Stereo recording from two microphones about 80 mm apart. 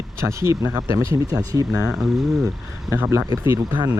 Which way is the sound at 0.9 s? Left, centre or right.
Right.